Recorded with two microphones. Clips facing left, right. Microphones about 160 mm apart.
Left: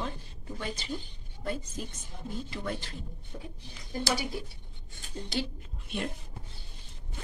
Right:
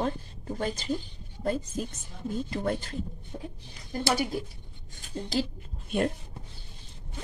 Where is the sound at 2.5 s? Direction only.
50° right (ahead or behind).